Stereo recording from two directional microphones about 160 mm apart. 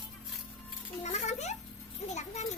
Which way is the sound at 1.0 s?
45° left (ahead or behind).